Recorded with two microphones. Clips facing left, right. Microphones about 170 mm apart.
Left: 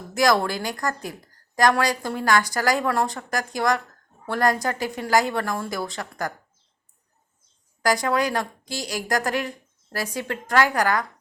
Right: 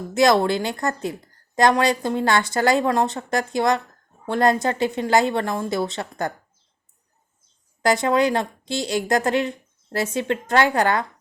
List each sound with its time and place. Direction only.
0.1 s a woman's voice: 25° right (ahead or behind)
7.8 s a woman's voice: 25° right (ahead or behind)